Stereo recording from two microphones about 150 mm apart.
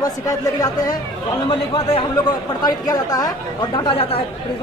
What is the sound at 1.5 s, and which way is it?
A man's voice, 35° left (ahead or behind).